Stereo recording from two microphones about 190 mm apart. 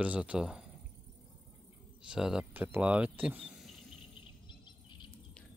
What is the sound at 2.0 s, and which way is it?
Speech, 5° right (ahead or behind).